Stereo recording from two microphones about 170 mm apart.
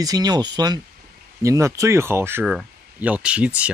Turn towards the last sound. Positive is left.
turn(degrees=-5)  # may be behind; listen again after turning